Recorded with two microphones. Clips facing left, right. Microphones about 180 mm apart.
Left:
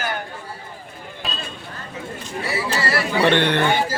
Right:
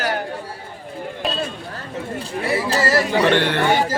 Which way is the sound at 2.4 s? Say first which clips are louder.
Right 4 dB; 50° right (ahead or behind).